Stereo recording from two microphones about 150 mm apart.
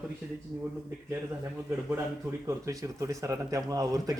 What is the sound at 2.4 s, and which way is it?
Speech, 20° right (ahead or behind).